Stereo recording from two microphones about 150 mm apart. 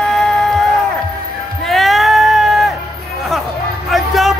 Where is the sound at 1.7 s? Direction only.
Centre (ahead or behind).